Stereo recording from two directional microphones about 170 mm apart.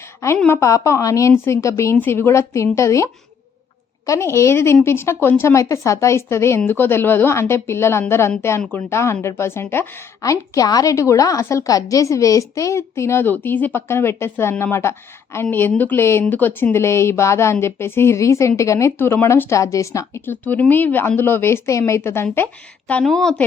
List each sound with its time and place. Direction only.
0.4 s a woman's voice: 15° left (ahead or behind)